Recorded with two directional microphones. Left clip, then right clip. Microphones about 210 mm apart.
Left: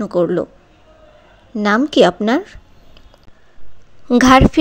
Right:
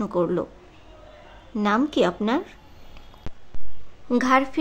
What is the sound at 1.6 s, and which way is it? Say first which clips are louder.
Speech: left 9 dB; 30° left (ahead or behind).